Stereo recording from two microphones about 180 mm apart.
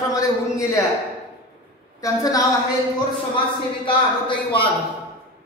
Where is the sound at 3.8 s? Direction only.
25° left (ahead or behind).